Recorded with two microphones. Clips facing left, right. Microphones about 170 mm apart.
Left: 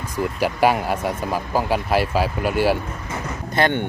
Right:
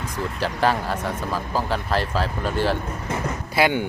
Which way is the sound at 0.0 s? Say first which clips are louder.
Left 4 dB; 10° left (ahead or behind).